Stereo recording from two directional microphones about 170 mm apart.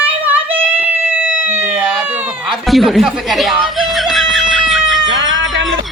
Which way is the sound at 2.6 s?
Centre (ahead or behind).